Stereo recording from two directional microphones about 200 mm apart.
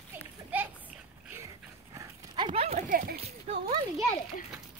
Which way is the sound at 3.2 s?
30° right (ahead or behind).